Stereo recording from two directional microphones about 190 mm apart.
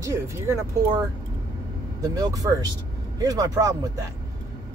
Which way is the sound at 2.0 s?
20° right (ahead or behind).